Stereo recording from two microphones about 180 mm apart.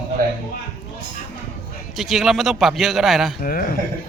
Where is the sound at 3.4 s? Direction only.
50° left (ahead or behind).